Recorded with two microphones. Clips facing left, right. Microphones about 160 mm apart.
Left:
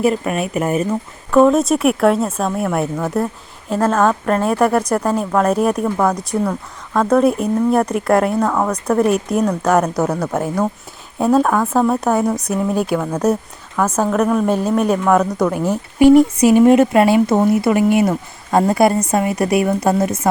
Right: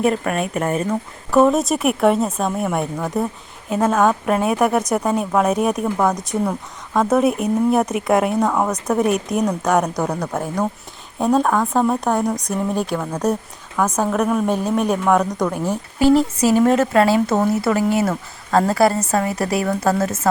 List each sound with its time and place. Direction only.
0.0 s speech: 5° left (ahead or behind)
16.0 s speech: 30° right (ahead or behind)
16.4 s speech: 15° left (ahead or behind)